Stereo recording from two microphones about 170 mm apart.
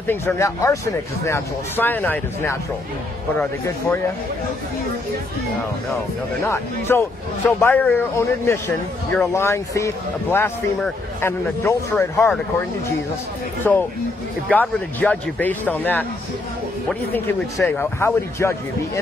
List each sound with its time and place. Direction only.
0.0 s speech: 15° left (ahead or behind)
6.4 s speech: 15° left (ahead or behind)
13.7 s speech: 10° left (ahead or behind)
17.6 s speech: 15° left (ahead or behind)